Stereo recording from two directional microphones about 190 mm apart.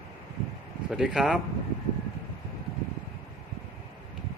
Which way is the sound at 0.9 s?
5° right (ahead or behind).